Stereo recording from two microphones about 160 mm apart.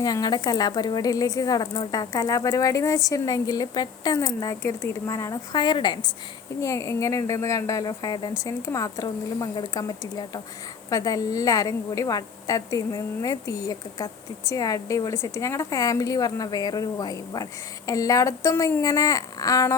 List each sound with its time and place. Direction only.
0.0 s a woman's voice: 25° left (ahead or behind)